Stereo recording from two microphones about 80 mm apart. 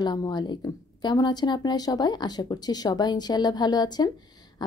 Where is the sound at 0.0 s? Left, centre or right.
Left.